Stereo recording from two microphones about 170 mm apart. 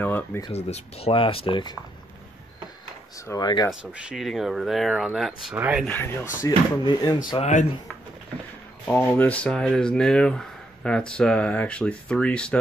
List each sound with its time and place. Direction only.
0.0 s a sound: 10° left (ahead or behind)
0.5 s speech: 40° left (ahead or behind)
3.3 s speech: 25° left (ahead or behind)
3.8 s speech: 5° right (ahead or behind)
5.9 s speech: 10° left (ahead or behind)
6.4 s speech: 25° left (ahead or behind)
8.8 s speech: 5° left (ahead or behind)